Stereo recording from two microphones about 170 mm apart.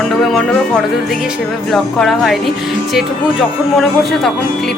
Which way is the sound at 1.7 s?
Centre (ahead or behind).